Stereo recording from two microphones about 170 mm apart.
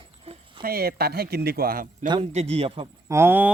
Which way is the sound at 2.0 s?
25° right (ahead or behind).